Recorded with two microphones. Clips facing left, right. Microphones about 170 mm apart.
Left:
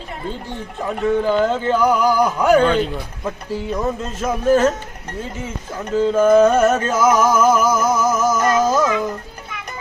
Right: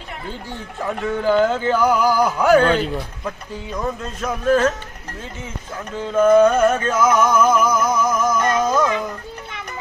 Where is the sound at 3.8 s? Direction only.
25° left (ahead or behind).